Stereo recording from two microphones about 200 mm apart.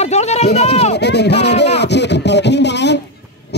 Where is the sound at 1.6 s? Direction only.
60° left (ahead or behind).